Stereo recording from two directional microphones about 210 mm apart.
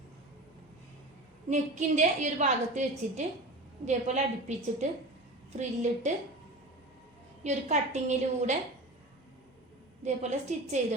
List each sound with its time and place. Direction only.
1.5 s a woman's voice: 35° right (ahead or behind)
7.4 s a woman's voice: 35° right (ahead or behind)
10.0 s a woman's voice: 35° right (ahead or behind)